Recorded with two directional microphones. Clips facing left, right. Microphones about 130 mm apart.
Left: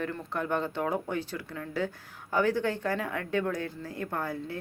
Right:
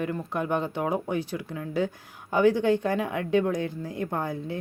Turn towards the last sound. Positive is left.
turn(degrees=-20)  # may be behind; listen again after turning